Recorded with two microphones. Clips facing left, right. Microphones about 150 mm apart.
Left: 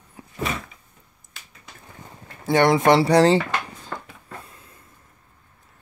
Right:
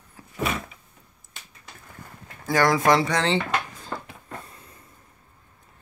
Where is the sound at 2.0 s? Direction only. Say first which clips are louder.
Left 4 dB; 25° left (ahead or behind).